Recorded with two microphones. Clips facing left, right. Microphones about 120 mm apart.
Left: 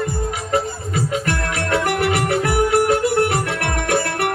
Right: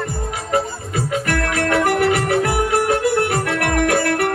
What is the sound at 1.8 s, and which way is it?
Music, 35° right (ahead or behind).